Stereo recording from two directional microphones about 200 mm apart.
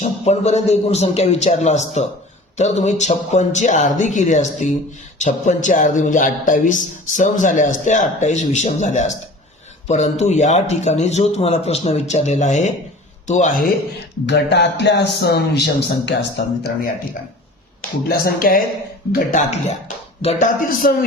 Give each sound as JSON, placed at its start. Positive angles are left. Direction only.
{"t": 0.0, "sound": "speech", "side_deg": 35}
{"t": 14.3, "sound": "speech", "side_deg": 60}
{"t": 18.3, "sound": "speech", "side_deg": 45}